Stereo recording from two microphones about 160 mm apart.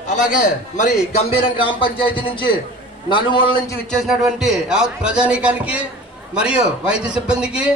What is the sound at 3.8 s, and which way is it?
A man's voice, centre (ahead or behind).